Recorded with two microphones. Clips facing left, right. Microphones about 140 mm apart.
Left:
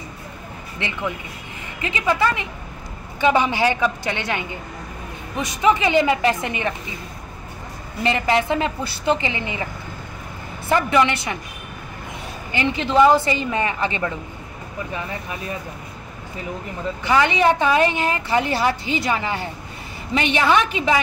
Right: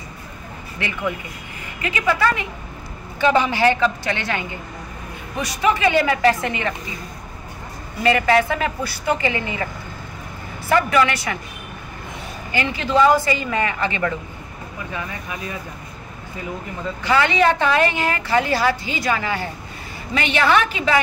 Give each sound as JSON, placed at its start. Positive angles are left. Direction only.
{"t": 0.7, "sound": "a woman's voice", "side_deg": 20}
{"t": 8.0, "sound": "a woman's voice", "side_deg": 20}
{"t": 10.7, "sound": "a woman's voice", "side_deg": 20}
{"t": 12.5, "sound": "a woman's voice", "side_deg": 20}
{"t": 17.0, "sound": "a woman's voice", "side_deg": 15}